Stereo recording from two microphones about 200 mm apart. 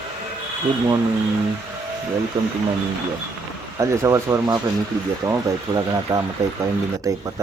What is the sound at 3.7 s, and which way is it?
Speech, 15° right (ahead or behind).